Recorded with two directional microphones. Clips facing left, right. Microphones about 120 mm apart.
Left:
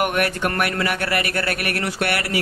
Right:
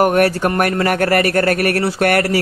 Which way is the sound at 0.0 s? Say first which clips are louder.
Right 7 dB; 40° right (ahead or behind).